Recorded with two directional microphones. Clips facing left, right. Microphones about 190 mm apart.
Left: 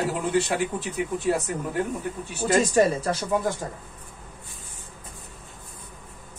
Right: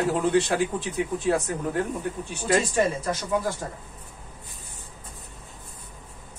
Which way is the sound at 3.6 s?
20° left (ahead or behind).